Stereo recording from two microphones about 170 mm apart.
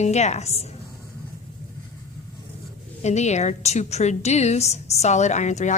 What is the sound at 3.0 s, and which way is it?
A woman's voice, 40° left (ahead or behind).